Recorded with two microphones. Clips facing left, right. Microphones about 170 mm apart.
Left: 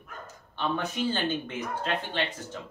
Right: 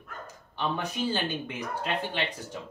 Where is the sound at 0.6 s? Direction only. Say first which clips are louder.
Left 1 dB; 10° right (ahead or behind).